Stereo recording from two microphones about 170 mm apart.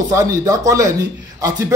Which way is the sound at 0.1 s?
20° right (ahead or behind).